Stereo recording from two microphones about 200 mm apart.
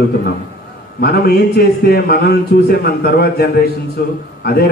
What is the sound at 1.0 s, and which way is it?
A man's voice, 50° left (ahead or behind).